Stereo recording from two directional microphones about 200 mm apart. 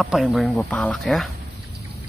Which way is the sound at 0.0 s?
Centre (ahead or behind).